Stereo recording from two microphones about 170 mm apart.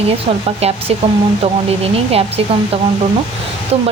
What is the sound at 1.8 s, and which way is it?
Speech, 35° right (ahead or behind).